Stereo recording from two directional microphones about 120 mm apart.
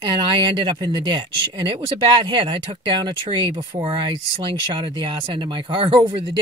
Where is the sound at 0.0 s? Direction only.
40° right (ahead or behind).